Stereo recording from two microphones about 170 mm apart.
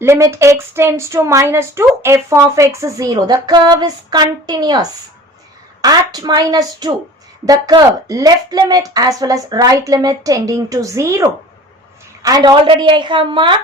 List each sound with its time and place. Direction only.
0.0 s a woman's voice: 15° right (ahead or behind)